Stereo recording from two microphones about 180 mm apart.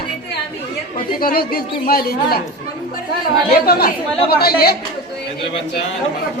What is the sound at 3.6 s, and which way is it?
Speech, 60° left (ahead or behind).